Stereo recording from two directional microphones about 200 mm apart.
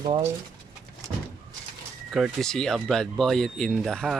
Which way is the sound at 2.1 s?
Centre (ahead or behind).